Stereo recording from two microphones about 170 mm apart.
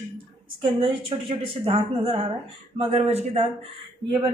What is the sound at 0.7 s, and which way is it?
Speech, 30° right (ahead or behind).